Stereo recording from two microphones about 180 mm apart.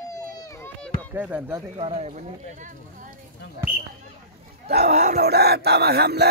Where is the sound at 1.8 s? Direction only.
35° right (ahead or behind).